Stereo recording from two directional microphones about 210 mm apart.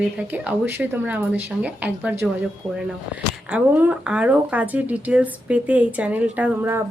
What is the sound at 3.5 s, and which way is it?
Speech, 5° right (ahead or behind).